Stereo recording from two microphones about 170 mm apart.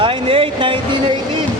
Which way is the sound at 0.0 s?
30° right (ahead or behind).